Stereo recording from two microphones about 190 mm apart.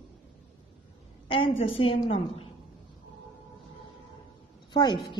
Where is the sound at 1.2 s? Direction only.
30° left (ahead or behind).